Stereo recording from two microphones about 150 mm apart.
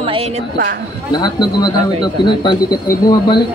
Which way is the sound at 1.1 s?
30° left (ahead or behind).